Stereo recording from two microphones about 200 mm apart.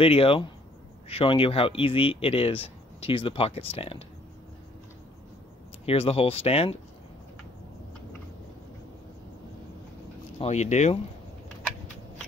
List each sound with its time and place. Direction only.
0.0 s speech: 30° left (ahead or behind)
5.9 s speech: 30° left (ahead or behind)
10.4 s speech: 35° left (ahead or behind)